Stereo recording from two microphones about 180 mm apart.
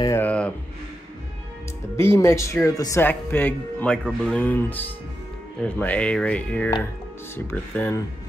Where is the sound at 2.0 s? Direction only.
15° left (ahead or behind).